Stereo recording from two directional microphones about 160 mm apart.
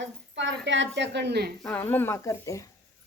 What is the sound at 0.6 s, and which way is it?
Speech, 90° right.